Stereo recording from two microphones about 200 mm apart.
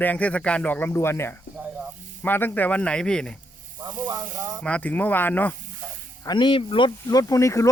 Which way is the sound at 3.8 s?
20° right (ahead or behind).